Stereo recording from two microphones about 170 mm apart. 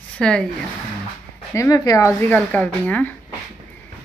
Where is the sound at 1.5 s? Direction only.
20° left (ahead or behind).